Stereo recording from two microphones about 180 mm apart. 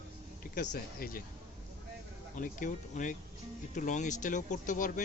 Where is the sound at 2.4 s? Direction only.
45° left (ahead or behind).